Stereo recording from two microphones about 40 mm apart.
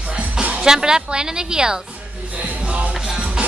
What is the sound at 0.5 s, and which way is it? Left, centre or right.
Speech, centre.